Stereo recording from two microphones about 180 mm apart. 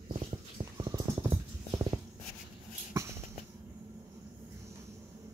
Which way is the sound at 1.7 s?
25° right (ahead or behind).